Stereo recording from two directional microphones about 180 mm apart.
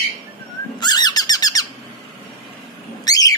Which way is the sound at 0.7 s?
25° left (ahead or behind).